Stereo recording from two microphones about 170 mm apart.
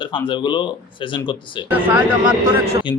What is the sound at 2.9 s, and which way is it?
Speech, 30° left (ahead or behind).